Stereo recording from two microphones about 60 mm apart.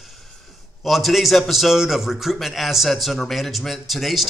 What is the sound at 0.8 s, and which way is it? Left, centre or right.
A man's voice, centre.